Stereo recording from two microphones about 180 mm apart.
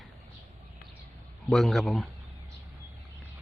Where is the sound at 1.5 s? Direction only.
Centre (ahead or behind).